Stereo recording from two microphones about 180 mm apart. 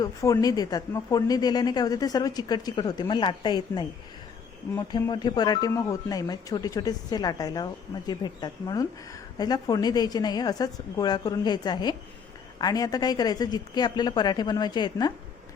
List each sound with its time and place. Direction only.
0.0 s speech: 20° left (ahead or behind)
4.9 s speech: 25° left (ahead or behind)